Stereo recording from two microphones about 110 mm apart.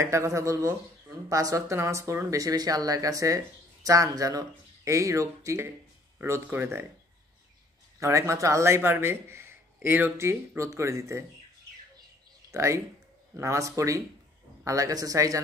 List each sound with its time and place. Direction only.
0.0 s a man's voice: 25° right (ahead or behind)
8.0 s a man's voice: 25° right (ahead or behind)
12.4 s a man's voice: 25° right (ahead or behind)